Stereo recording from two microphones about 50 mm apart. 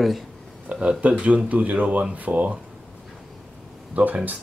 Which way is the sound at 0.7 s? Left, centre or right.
Right.